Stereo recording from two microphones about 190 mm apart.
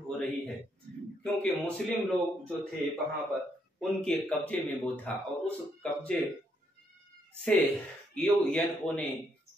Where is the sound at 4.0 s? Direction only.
5° left (ahead or behind).